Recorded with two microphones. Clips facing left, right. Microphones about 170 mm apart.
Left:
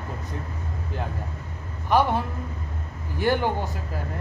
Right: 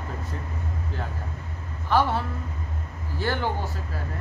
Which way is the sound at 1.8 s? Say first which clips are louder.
Left 2 dB; 15° left (ahead or behind).